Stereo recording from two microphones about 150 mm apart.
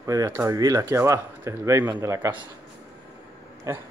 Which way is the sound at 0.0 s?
20° right (ahead or behind).